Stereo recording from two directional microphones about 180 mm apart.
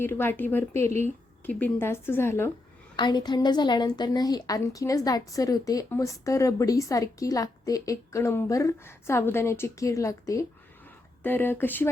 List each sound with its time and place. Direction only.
0.0 s a woman's voice: 10° left (ahead or behind)
2.9 s a woman's voice: 25° left (ahead or behind)